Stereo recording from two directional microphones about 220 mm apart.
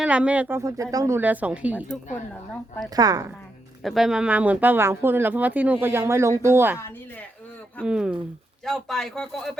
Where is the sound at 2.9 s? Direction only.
15° right (ahead or behind).